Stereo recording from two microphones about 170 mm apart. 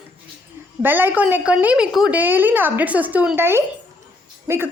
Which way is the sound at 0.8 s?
10° right (ahead or behind).